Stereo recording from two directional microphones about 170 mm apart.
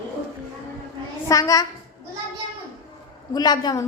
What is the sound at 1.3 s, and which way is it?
Speech, 20° left (ahead or behind).